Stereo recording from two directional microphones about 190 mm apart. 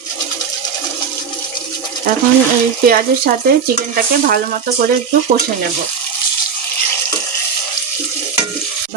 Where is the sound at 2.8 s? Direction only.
50° right (ahead or behind).